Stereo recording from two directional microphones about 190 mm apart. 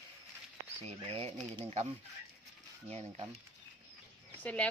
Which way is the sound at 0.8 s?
30° right (ahead or behind).